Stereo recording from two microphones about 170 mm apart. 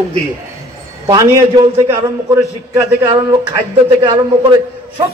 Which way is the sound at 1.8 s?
15° right (ahead or behind).